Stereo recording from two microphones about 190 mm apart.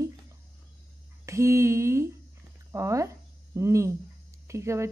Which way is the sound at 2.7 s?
15° right (ahead or behind).